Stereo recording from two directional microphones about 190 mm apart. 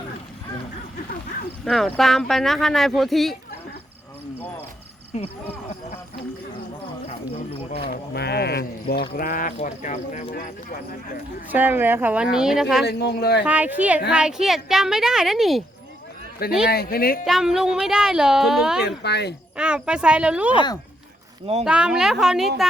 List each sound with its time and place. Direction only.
1.6 s speech: centre (ahead or behind)
5.1 s speech: 35° left (ahead or behind)
7.9 s speech: 55° left (ahead or behind); by 10.5 s 40° left (ahead or behind)
11.5 s speech: 10° right (ahead or behind)
12.8 s speech: 60° left (ahead or behind)
13.4 s speech: 10° right (ahead or behind)
16.6 s speech: 55° left (ahead or behind)
17.2 s speech: centre (ahead or behind)
18.9 s speech: 60° left (ahead or behind)
19.5 s speech: 5° right (ahead or behind)
21.6 s speech: 5° right (ahead or behind)